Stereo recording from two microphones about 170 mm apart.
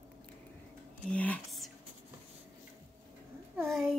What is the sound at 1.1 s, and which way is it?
Speech, 5° left (ahead or behind).